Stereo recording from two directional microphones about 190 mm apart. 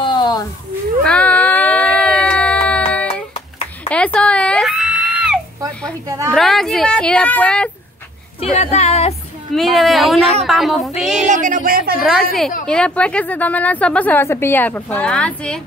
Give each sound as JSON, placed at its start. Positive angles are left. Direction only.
{"t": 0.0, "sound": "a sound", "side_deg": 20}
{"t": 1.0, "sound": "baby cry", "side_deg": 5}
{"t": 2.9, "sound": "child singing", "side_deg": 5}
{"t": 3.3, "sound": "a sound", "side_deg": 30}
{"t": 3.9, "sound": "a sound", "side_deg": 5}
{"t": 6.0, "sound": "a woman's voice", "side_deg": -15}
{"t": 6.3, "sound": "speech", "side_deg": 0}
{"t": 8.4, "sound": "a woman's voice", "side_deg": 35}
{"t": 9.6, "sound": "speech", "side_deg": 0}
{"t": 11.2, "sound": "speech", "side_deg": -40}
{"t": 12.6, "sound": "a woman's voice", "side_deg": 5}